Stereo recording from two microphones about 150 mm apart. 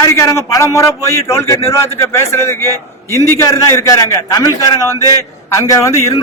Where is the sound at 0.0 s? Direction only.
20° left (ahead or behind).